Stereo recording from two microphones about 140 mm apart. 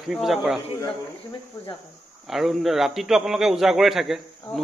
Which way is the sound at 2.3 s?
Centre (ahead or behind).